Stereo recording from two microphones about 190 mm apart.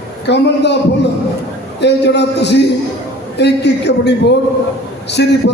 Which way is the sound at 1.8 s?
65° left (ahead or behind).